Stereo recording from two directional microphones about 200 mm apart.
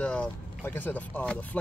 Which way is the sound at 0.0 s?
5° left (ahead or behind).